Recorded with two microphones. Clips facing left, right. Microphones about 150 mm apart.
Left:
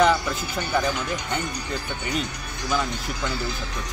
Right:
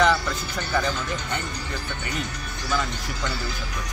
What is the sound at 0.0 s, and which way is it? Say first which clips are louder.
Speech: left 1 dB; 15° left (ahead or behind).